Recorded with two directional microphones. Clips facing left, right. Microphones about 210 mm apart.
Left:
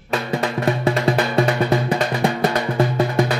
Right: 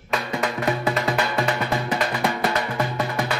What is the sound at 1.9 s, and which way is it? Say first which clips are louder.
Drum: left 4 dB; 30° left (ahead or behind).